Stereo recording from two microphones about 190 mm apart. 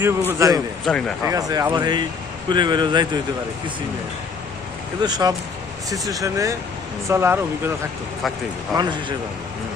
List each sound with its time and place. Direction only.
0.0 s speech: 15° right (ahead or behind)
0.9 s speech: 5° left (ahead or behind)
1.3 s speech: 20° right (ahead or behind)
5.0 s speech: 20° right (ahead or behind)
8.7 s speech: 25° right (ahead or behind)